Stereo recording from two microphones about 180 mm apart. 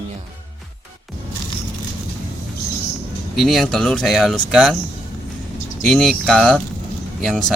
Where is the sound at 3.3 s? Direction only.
Centre (ahead or behind).